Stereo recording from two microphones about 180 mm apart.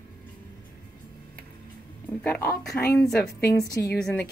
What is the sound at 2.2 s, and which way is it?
Speech, 15° left (ahead or behind).